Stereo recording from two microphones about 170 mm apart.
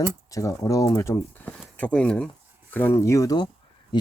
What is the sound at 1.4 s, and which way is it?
Speech, 5° left (ahead or behind).